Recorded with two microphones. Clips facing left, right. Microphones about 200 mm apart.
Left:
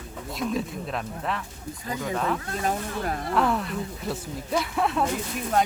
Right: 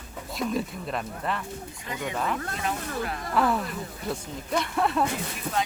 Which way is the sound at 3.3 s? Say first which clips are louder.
Even; centre (ahead or behind).